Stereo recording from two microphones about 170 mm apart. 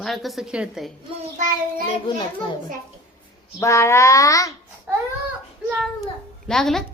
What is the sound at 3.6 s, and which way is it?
Child singing, 15° left (ahead or behind).